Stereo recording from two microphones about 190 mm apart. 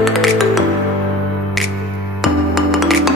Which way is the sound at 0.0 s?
Centre (ahead or behind).